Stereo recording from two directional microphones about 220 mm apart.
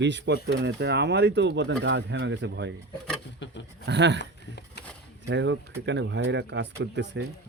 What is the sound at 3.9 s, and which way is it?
Speech, 55° right (ahead or behind).